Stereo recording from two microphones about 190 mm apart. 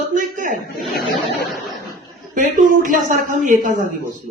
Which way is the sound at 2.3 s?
45° right (ahead or behind).